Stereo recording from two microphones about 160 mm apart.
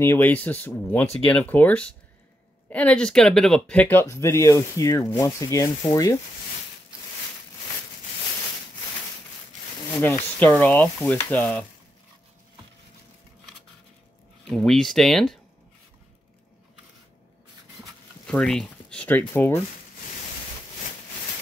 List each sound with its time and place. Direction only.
0.0 s speech: 15° left (ahead or behind)
9.8 s speech: 15° left (ahead or behind)
14.5 s speech: 5° left (ahead or behind)
18.2 s speech: 5° left (ahead or behind)